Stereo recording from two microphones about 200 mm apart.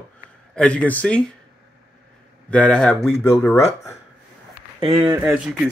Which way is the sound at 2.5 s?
5° left (ahead or behind).